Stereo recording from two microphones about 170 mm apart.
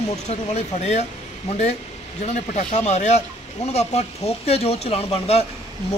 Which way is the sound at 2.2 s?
40° left (ahead or behind).